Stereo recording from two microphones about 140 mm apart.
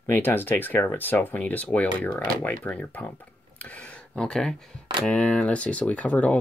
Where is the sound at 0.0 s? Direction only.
15° left (ahead or behind).